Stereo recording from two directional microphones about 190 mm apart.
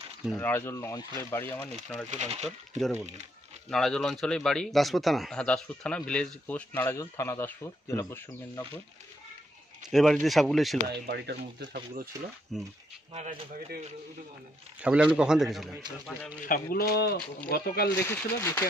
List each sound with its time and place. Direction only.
0.4 s speech: 10° left (ahead or behind)
2.0 s speech: 35° right (ahead or behind)
3.7 s speech: centre (ahead or behind)
9.8 s speech: centre (ahead or behind)
10.9 s speech: 60° right (ahead or behind)
12.5 s speech: centre (ahead or behind)
13.1 s speech: 30° right (ahead or behind)
14.8 s speech: 5° right (ahead or behind)
16.7 s speech: 55° left (ahead or behind)
18.0 s speech: 15° left (ahead or behind)